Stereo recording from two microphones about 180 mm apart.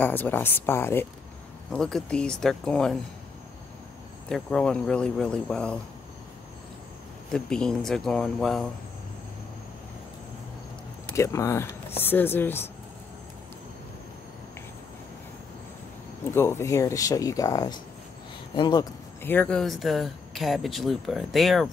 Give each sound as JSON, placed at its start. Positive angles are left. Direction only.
{"t": 0.0, "sound": "speech", "side_deg": 10}
{"t": 4.3, "sound": "speech", "side_deg": 5}
{"t": 7.3, "sound": "speech", "side_deg": 5}
{"t": 11.1, "sound": "speech", "side_deg": 15}
{"t": 16.3, "sound": "speech", "side_deg": 15}
{"t": 19.2, "sound": "speech", "side_deg": 10}